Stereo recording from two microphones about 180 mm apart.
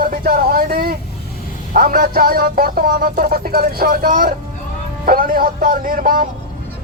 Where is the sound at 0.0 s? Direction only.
55° right (ahead or behind).